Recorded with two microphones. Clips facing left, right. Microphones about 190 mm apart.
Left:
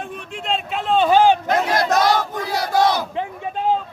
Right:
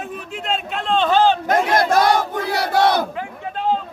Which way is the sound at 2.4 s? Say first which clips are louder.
Even; 65° right (ahead or behind).